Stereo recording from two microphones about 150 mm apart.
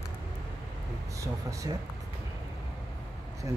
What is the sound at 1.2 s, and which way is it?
Speech, 20° right (ahead or behind).